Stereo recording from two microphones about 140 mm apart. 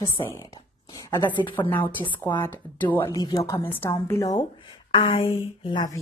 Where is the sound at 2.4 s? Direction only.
15° left (ahead or behind).